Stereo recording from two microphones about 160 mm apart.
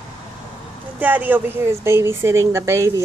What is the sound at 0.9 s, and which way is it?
A woman's voice, 10° right (ahead or behind).